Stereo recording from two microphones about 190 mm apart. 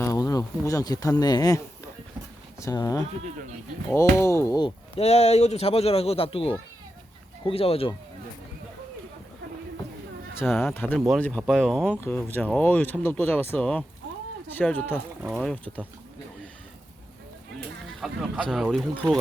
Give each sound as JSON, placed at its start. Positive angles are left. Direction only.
{"t": 0.0, "sound": "speech", "side_deg": 20}
{"t": 4.9, "sound": "speech", "side_deg": 35}
{"t": 10.5, "sound": "speech", "side_deg": 10}
{"t": 15.2, "sound": "speech", "side_deg": -10}
{"t": 15.4, "sound": "speech", "side_deg": 5}
{"t": 18.0, "sound": "speech", "side_deg": 0}